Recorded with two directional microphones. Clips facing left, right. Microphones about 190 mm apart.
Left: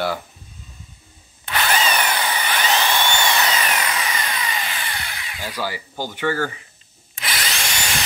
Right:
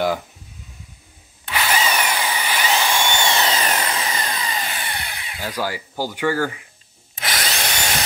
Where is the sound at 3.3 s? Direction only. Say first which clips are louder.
Right 1 dB; 25° right (ahead or behind).